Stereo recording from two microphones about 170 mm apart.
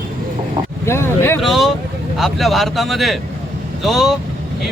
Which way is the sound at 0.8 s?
15° left (ahead or behind).